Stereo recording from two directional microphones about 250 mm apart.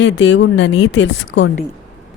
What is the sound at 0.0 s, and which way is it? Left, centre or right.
A woman's voice, left.